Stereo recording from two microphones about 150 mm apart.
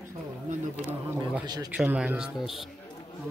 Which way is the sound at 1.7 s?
10° right (ahead or behind).